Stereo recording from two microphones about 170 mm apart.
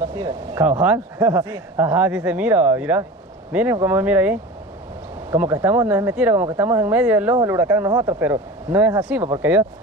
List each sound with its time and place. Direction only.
0.1 s speech: 25° right (ahead or behind)
0.7 s speech: 10° right (ahead or behind)